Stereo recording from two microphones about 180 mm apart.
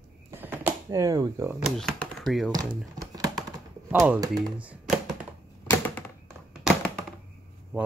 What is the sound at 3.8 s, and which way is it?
Speech, 10° right (ahead or behind).